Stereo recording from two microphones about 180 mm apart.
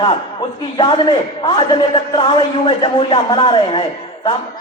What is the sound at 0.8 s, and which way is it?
A man's voice, 25° left (ahead or behind).